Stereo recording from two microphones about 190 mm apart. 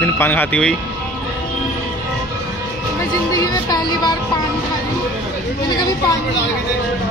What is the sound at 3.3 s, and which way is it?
Music, 20° left (ahead or behind).